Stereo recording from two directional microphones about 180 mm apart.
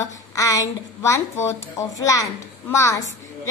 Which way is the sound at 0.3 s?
20° left (ahead or behind).